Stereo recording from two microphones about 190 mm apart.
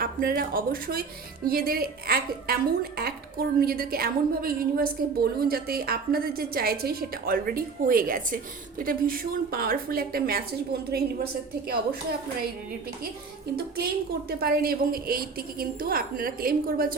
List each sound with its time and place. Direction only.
0.0 s a woman's voice: 50° right (ahead or behind)
14.3 s a woman's voice: 55° right (ahead or behind)